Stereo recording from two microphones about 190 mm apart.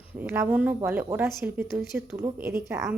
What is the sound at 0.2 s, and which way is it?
Speech, 10° right (ahead or behind).